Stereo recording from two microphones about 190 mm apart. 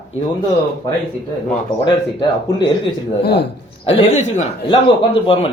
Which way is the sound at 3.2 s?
60° left (ahead or behind).